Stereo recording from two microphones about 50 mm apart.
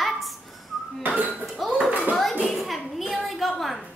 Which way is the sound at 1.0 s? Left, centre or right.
Right.